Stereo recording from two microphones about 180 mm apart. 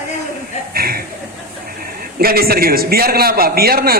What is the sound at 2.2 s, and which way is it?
A woman's voice, 55° right (ahead or behind).